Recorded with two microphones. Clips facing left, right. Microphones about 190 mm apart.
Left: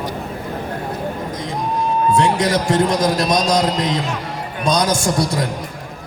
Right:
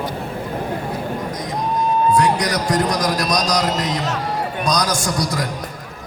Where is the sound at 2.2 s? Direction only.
25° left (ahead or behind).